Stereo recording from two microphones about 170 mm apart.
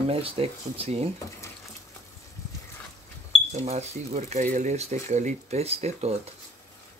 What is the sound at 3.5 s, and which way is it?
Speech, 40° right (ahead or behind).